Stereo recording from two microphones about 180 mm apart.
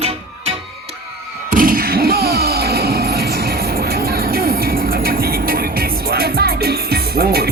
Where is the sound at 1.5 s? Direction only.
50° right (ahead or behind).